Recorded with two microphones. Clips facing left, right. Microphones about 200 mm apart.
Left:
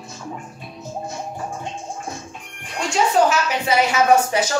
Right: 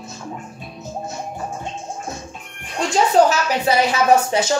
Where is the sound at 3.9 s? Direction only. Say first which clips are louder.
Even; 30° right (ahead or behind).